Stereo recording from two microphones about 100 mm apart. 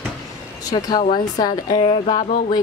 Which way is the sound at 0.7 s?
60° left (ahead or behind).